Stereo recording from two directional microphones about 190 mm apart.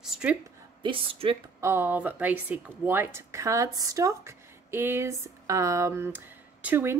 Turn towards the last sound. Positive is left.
turn(degrees=-10)  # may be behind; listen again after turning